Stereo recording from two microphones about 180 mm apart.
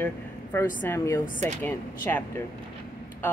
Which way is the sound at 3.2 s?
10° left (ahead or behind).